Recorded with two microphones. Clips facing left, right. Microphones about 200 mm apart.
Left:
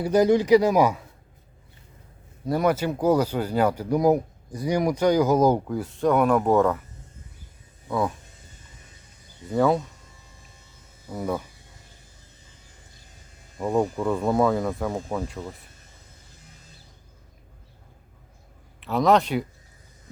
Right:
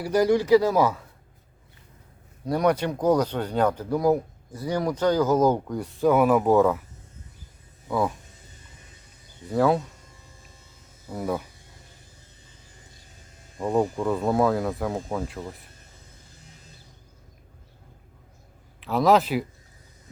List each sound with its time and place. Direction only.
0.0 s speech: 20° left (ahead or behind)
2.5 s speech: 5° left (ahead or behind)
7.9 s speech: centre (ahead or behind)
9.5 s speech: centre (ahead or behind)
11.1 s speech: 5° right (ahead or behind)
13.6 s speech: centre (ahead or behind)
18.8 s speech: centre (ahead or behind)